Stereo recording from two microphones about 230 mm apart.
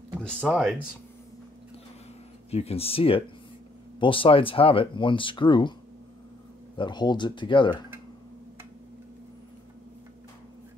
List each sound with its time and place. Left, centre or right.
0.2 s speech: centre
2.5 s speech: left
6.8 s speech: centre